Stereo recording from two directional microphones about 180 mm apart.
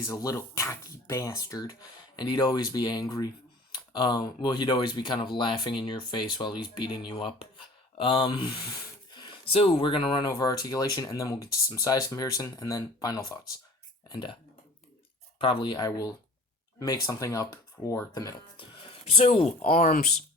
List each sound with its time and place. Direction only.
0.0 s speech: 20° left (ahead or behind)
15.4 s speech: 30° left (ahead or behind)
19.6 s speech: 50° left (ahead or behind)